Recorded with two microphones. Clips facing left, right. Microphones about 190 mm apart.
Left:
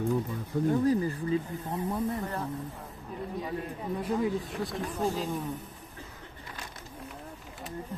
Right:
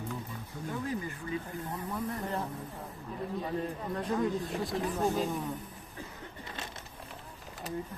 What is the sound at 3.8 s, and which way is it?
Speech, 10° left (ahead or behind).